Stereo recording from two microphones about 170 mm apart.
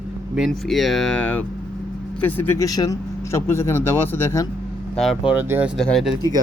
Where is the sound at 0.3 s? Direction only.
Centre (ahead or behind).